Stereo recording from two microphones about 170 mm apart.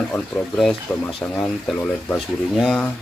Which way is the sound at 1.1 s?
30° left (ahead or behind).